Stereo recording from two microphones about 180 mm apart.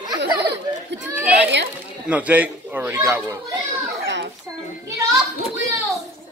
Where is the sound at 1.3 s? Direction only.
70° right (ahead or behind).